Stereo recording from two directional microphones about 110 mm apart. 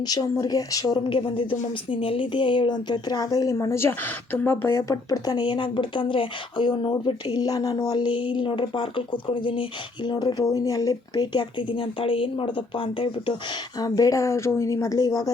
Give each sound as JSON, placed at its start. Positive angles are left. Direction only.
{"t": 0.1, "sound": "speech", "side_deg": 35}
{"t": 6.9, "sound": "speech", "side_deg": 35}
{"t": 10.4, "sound": "speech", "side_deg": 30}
{"t": 13.7, "sound": "speech", "side_deg": 35}